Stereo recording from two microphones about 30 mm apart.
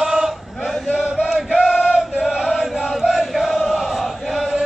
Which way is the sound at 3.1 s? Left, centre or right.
Centre.